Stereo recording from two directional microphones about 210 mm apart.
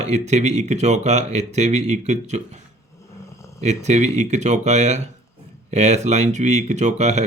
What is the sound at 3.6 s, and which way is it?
Speech, 35° right (ahead or behind).